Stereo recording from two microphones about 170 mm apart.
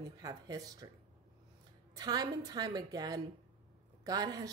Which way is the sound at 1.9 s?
25° right (ahead or behind).